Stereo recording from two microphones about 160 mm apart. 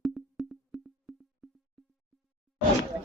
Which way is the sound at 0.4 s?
Centre (ahead or behind).